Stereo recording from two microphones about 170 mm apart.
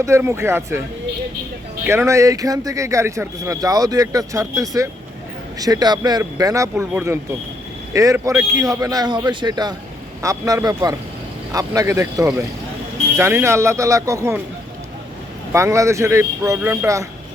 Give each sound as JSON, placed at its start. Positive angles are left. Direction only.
{"t": 0.0, "sound": "speech", "side_deg": -15}
{"t": 1.9, "sound": "speech", "side_deg": -15}
{"t": 15.5, "sound": "speech", "side_deg": -15}